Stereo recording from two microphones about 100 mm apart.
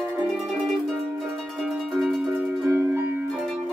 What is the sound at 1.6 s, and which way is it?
Music, 5° right (ahead or behind).